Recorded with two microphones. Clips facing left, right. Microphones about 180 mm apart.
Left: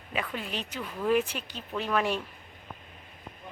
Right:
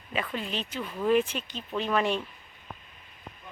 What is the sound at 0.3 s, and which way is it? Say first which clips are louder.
Speech: right 2 dB; 10° left (ahead or behind).